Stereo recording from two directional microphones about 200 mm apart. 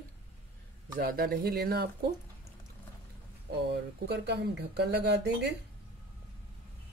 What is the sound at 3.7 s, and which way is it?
Speech, 55° right (ahead or behind).